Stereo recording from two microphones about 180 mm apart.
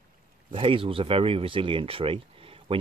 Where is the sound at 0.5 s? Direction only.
30° right (ahead or behind).